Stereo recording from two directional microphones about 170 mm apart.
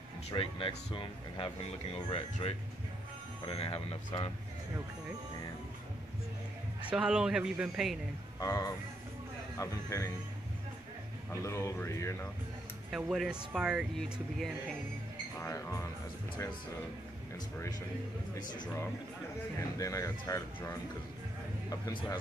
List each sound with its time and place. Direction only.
0.3 s speech: 30° left (ahead or behind)
3.4 s speech: 35° left (ahead or behind)
6.9 s speech: 5° right (ahead or behind)
8.4 s speech: 20° left (ahead or behind)
11.4 s speech: 15° left (ahead or behind)
12.9 s speech: 5° right (ahead or behind)
15.4 s speech: 20° left (ahead or behind)
19.8 s speech: 20° left (ahead or behind)